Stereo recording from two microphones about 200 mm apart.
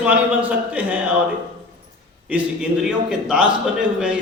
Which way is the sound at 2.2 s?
5° right (ahead or behind).